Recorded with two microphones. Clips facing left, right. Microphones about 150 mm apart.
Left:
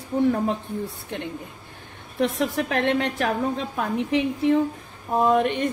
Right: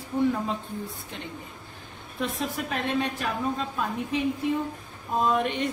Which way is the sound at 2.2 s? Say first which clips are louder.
Left 7 dB; 75° left (ahead or behind).